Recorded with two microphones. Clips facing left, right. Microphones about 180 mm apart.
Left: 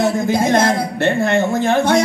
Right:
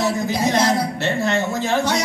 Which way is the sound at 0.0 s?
50° left (ahead or behind).